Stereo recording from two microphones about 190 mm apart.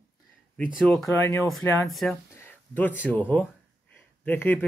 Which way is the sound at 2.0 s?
10° left (ahead or behind).